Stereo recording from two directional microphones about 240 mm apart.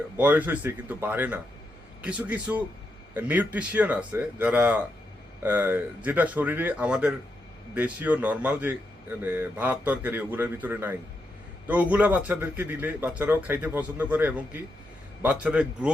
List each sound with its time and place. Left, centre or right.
0.2 s a man's voice: centre